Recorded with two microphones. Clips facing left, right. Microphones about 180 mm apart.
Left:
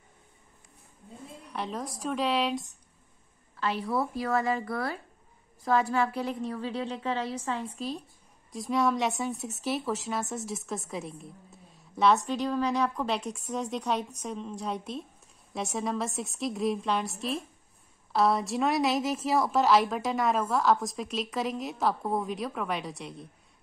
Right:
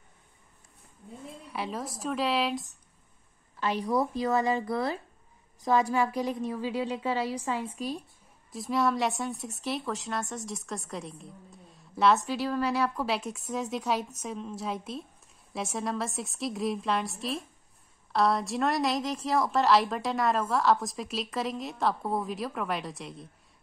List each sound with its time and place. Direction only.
1.5 s a woman's voice: 5° right (ahead or behind)
3.5 s a woman's voice: 15° right (ahead or behind)
8.5 s a woman's voice: centre (ahead or behind)